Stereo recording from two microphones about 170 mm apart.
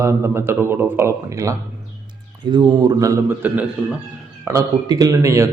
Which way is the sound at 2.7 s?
25° right (ahead or behind).